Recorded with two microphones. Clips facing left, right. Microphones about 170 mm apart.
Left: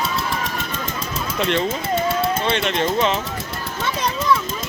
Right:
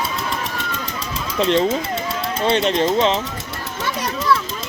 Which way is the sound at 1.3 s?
30° right (ahead or behind).